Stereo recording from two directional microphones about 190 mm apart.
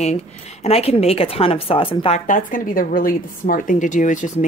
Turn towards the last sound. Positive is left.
turn(degrees=40)  # may be behind; listen again after turning